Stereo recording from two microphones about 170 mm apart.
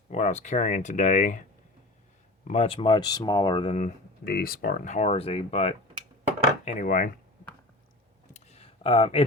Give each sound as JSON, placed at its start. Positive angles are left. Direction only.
{"t": 0.1, "sound": "speech", "side_deg": 40}
{"t": 2.5, "sound": "speech", "side_deg": 35}
{"t": 4.2, "sound": "speech", "side_deg": 65}
{"t": 6.7, "sound": "speech", "side_deg": 50}
{"t": 8.3, "sound": "a sound", "side_deg": 40}